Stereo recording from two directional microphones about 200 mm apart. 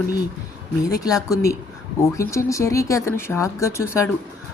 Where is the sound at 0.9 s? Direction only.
15° left (ahead or behind).